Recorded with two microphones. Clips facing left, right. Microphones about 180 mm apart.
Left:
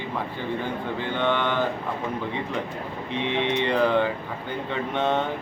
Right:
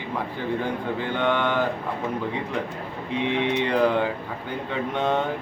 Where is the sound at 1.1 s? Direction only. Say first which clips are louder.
Right 1 dB; 10° right (ahead or behind).